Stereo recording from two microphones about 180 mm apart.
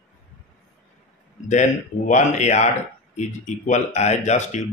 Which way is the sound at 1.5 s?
40° left (ahead or behind).